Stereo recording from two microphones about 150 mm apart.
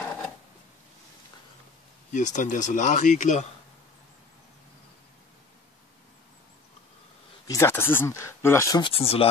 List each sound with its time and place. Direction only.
2.1 s speech: 55° left (ahead or behind)
7.4 s speech: 20° left (ahead or behind)
8.8 s speech: 40° left (ahead or behind)